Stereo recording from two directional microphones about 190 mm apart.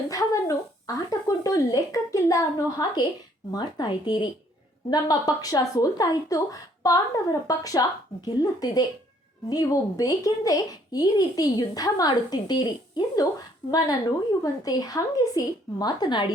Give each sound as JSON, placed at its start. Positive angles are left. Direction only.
{"t": 0.1, "sound": "speech", "side_deg": 20}